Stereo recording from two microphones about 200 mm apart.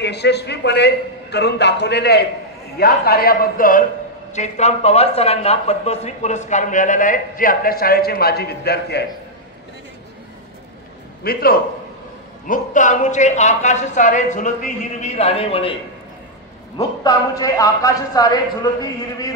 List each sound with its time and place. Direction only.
0.0 s a man's voice: 55° left (ahead or behind)
11.2 s a man's voice: 45° left (ahead or behind); by 15.7 s 30° left (ahead or behind)
16.7 s a man's voice: 15° left (ahead or behind)